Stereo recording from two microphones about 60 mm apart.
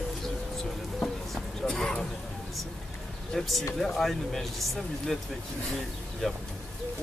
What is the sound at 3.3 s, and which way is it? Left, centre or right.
Speech, centre.